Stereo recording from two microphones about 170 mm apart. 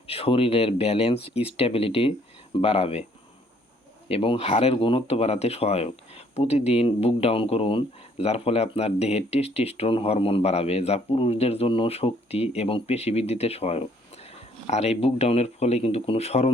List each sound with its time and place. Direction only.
0.1 s speech: 35° left (ahead or behind)
4.1 s speech: 35° left (ahead or behind)